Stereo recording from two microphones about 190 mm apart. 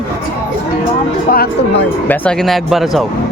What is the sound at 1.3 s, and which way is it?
Speech, 50° left (ahead or behind).